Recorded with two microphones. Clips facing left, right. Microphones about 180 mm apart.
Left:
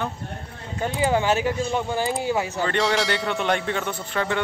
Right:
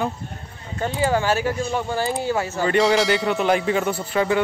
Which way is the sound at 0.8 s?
15° left (ahead or behind).